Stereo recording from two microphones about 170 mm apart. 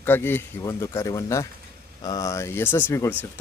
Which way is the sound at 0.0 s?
10° left (ahead or behind).